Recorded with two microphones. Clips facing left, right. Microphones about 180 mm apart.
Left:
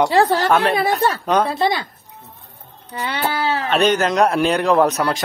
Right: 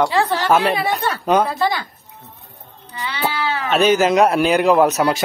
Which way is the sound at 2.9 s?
45° left (ahead or behind).